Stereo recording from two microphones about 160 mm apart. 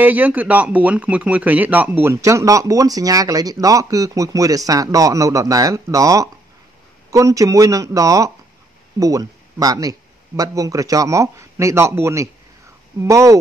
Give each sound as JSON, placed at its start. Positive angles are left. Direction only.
{"t": 0.0, "sound": "speech", "side_deg": -10}